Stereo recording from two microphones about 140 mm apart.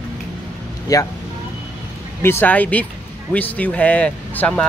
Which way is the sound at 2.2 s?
15° left (ahead or behind).